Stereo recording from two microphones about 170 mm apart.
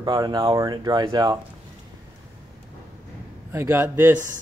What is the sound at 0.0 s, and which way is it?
Speech, 25° right (ahead or behind).